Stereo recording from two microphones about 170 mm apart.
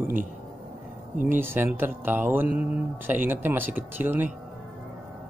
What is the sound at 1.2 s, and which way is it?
Speech, 10° right (ahead or behind).